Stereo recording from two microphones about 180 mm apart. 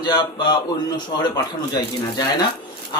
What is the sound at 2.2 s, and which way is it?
Speech, 20° left (ahead or behind).